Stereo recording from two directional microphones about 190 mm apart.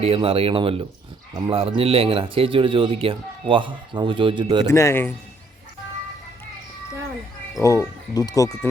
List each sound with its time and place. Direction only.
0.0 s speech: 30° right (ahead or behind)
4.6 s speech: 15° left (ahead or behind)
7.6 s speech: 15° left (ahead or behind)